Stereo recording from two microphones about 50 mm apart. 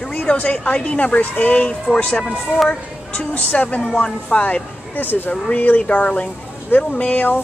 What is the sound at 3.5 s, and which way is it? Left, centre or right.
Speech, left.